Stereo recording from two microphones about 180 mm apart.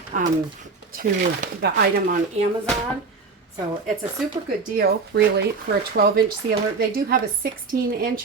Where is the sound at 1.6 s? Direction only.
65° right (ahead or behind).